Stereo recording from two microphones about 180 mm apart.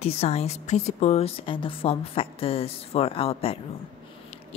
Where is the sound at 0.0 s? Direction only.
35° left (ahead or behind).